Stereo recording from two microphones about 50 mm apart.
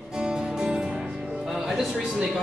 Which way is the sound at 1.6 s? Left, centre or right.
Centre.